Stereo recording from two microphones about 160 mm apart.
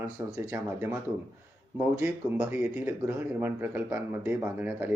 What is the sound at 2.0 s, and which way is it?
Speech, 15° right (ahead or behind).